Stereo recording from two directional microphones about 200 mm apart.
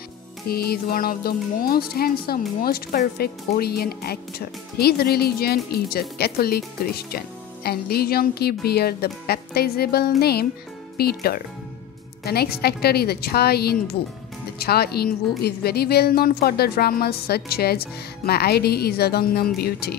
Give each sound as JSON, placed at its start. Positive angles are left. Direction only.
{"t": 0.5, "sound": "a woman's voice", "side_deg": 50}